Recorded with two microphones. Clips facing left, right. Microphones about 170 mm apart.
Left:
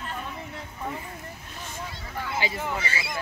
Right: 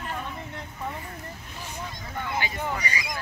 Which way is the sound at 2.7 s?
15° right (ahead or behind).